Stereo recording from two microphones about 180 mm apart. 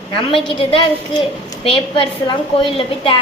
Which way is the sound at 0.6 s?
30° left (ahead or behind).